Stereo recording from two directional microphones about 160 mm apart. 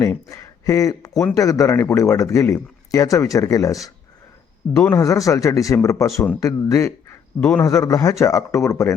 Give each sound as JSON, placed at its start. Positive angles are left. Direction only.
{"t": 0.0, "sound": "speech", "side_deg": 20}